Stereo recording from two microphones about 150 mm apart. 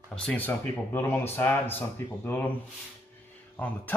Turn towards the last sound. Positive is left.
turn(degrees=10)  # may be behind; listen again after turning